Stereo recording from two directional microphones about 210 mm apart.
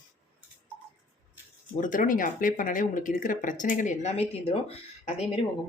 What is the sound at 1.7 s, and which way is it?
Speech, 40° left (ahead or behind).